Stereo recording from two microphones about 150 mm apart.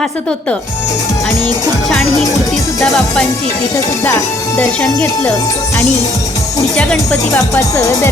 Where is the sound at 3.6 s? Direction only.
20° left (ahead or behind).